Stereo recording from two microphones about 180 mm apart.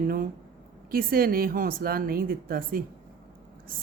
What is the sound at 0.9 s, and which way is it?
A woman's voice, 55° right (ahead or behind).